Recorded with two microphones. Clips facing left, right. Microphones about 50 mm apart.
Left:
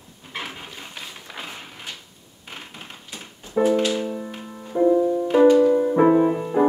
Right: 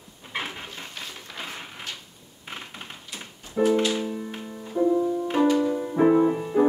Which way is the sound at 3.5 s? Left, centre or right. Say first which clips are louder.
Left 2 dB; centre.